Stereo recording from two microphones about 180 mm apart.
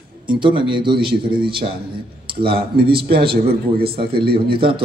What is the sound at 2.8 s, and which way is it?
Speech, 30° right (ahead or behind).